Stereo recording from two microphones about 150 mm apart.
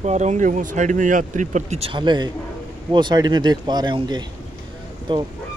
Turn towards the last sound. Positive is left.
turn(degrees=-30)  # may be behind; listen again after turning